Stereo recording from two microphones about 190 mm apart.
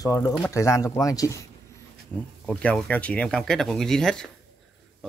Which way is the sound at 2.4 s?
5° left (ahead or behind).